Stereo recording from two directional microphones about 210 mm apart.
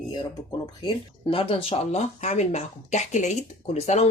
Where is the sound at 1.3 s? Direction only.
25° left (ahead or behind).